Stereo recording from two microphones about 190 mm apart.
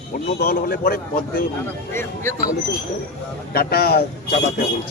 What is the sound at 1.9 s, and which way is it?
Speech, 15° left (ahead or behind).